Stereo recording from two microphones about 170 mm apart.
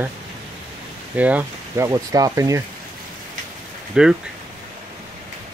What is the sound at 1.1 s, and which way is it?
Speech, 10° right (ahead or behind).